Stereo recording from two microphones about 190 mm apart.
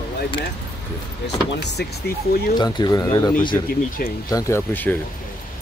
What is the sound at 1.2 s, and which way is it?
Speech, 60° left (ahead or behind).